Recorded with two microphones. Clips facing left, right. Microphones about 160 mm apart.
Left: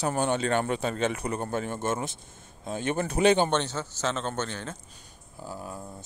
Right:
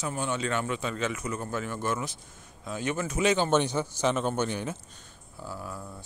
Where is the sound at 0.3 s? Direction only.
35° left (ahead or behind).